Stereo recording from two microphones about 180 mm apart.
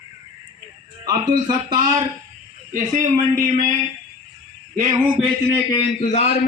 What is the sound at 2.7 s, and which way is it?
Speech, 45° right (ahead or behind).